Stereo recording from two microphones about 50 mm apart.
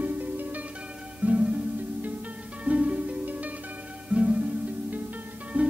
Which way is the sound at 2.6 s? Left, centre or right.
Right.